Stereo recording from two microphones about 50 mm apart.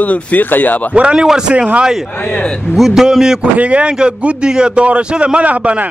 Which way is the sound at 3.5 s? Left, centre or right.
Right.